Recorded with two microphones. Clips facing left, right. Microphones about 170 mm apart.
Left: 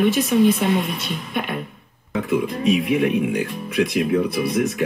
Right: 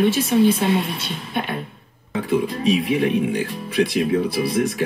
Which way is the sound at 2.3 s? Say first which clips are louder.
Even; 30° right (ahead or behind).